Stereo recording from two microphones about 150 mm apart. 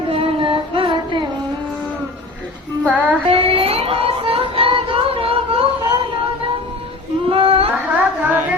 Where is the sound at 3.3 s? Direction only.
40° right (ahead or behind).